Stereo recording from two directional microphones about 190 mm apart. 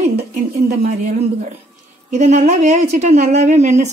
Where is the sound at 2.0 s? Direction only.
40° right (ahead or behind).